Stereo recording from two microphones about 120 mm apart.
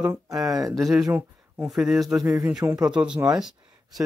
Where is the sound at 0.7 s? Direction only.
Centre (ahead or behind).